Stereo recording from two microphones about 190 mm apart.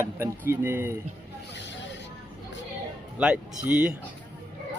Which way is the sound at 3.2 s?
5° right (ahead or behind).